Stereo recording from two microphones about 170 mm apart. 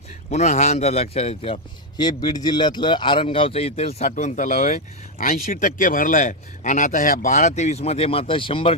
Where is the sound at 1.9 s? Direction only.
25° left (ahead or behind).